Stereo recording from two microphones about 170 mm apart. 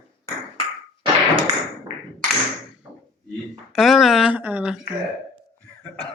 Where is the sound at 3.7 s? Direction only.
Centre (ahead or behind).